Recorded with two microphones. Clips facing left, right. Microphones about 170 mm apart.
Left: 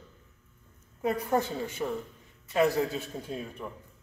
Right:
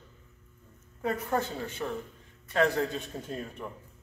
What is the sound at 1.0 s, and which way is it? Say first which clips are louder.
A woman's voice: left 2 dB; 10° left (ahead or behind).